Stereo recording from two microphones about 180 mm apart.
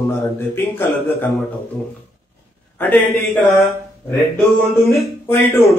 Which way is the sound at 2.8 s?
10° left (ahead or behind).